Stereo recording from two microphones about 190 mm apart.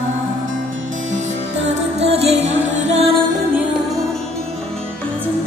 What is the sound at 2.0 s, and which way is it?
Music, 30° right (ahead or behind).